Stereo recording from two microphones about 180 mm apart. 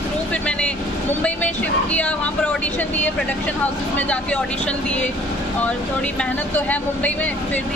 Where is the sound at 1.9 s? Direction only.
10° left (ahead or behind).